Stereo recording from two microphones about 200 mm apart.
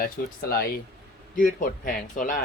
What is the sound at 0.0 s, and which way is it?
Speech, 50° left (ahead or behind).